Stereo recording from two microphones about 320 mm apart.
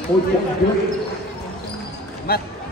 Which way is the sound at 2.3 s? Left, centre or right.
Left.